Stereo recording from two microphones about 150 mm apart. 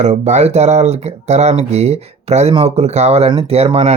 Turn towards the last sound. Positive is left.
turn(degrees=-45)  # may be behind; listen again after turning